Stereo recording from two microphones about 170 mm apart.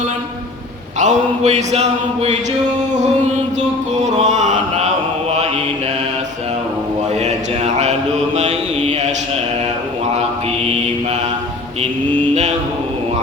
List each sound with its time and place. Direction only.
0.9 s a sound: 45° right (ahead or behind)
4.0 s chant: 45° right (ahead or behind)
7.2 s mantra: 40° right (ahead or behind)
12.3 s mantra: 40° right (ahead or behind)